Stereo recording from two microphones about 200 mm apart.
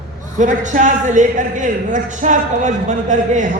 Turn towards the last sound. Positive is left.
turn(degrees=-40)  # may be behind; listen again after turning